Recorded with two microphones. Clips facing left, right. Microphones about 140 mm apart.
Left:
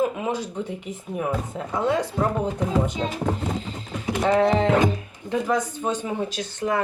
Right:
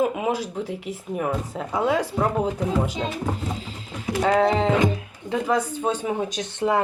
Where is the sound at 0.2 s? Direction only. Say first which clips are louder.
Right 2 dB; 10° right (ahead or behind).